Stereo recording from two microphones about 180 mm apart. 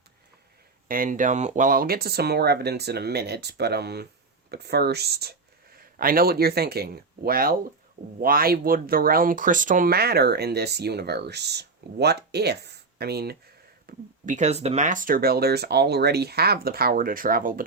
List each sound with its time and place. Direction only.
0.9 s speech: 50° right (ahead or behind)
13.8 s speech: 45° right (ahead or behind)